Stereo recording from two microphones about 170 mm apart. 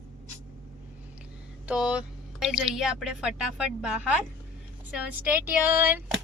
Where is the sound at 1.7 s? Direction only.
5° right (ahead or behind).